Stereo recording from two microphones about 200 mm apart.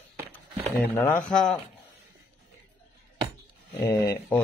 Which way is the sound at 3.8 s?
15° left (ahead or behind).